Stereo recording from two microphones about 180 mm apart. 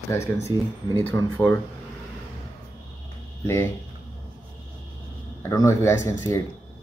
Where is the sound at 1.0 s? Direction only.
15° left (ahead or behind).